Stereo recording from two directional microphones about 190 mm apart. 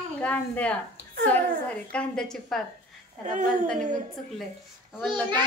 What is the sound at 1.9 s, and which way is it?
Speech, 5° left (ahead or behind).